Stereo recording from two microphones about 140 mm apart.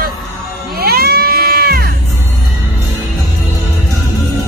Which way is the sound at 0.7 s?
90° right.